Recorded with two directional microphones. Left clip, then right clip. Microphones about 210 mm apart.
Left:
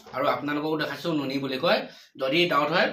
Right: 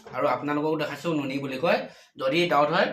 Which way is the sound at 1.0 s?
10° right (ahead or behind).